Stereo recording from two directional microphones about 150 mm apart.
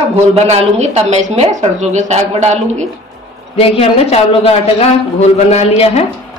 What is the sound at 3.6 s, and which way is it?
A man's voice, 40° left (ahead or behind).